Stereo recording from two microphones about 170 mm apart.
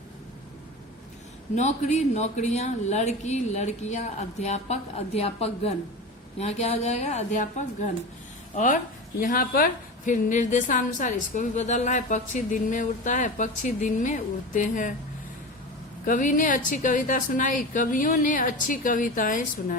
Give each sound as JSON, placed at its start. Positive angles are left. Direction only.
{"t": 1.5, "sound": "speech", "side_deg": 45}
{"t": 8.5, "sound": "a woman's voice", "side_deg": 50}
{"t": 16.0, "sound": "a woman's voice", "side_deg": 50}